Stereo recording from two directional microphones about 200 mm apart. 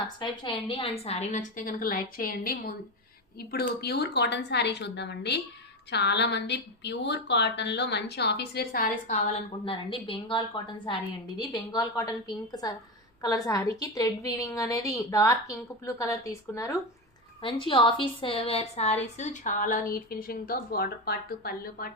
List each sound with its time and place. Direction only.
0.2 s a woman's voice: 25° left (ahead or behind)
9.7 s a woman's voice: 25° left (ahead or behind); by 21.8 s 50° left (ahead or behind)